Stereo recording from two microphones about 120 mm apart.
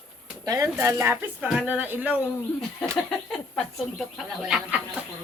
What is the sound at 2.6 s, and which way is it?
Speech, 5° left (ahead or behind).